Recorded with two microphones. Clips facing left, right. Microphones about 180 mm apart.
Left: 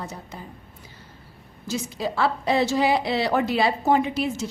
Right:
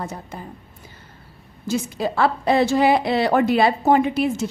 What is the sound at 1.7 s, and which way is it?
A woman's voice, 55° right (ahead or behind).